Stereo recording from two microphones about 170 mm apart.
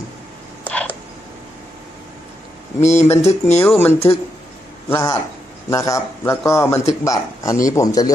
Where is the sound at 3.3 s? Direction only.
15° left (ahead or behind).